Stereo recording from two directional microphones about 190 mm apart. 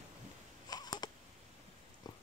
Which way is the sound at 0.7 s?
20° left (ahead or behind).